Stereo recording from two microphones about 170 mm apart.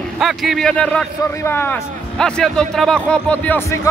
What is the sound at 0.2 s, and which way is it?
A man's voice, centre (ahead or behind).